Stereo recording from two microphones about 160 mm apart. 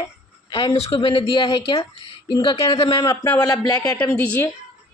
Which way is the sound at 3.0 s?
15° left (ahead or behind).